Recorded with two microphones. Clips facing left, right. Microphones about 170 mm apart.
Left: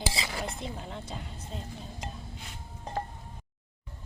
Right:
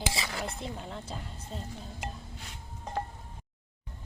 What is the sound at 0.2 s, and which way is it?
Dishes, 15° left (ahead or behind).